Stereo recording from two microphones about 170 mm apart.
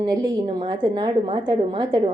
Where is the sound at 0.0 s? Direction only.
30° right (ahead or behind).